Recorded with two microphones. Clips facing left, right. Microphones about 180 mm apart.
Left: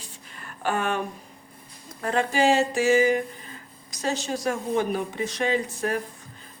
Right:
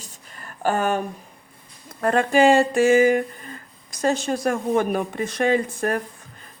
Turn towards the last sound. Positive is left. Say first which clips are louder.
# right 4 dB
turn(degrees=-50)  # may be behind; listen again after turning